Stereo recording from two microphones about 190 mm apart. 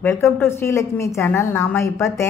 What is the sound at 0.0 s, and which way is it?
A woman's voice, 15° left (ahead or behind).